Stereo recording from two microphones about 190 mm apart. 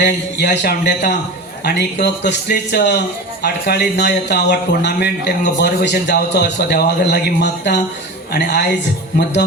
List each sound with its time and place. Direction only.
0.0 s speech: 60° left (ahead or behind)